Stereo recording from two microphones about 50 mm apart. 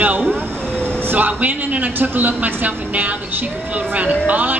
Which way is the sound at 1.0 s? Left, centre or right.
Right.